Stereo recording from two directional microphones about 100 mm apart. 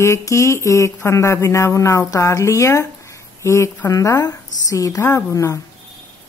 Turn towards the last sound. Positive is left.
turn(degrees=30)  # may be behind; listen again after turning